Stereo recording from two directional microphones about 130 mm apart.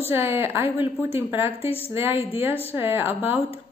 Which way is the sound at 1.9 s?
20° right (ahead or behind).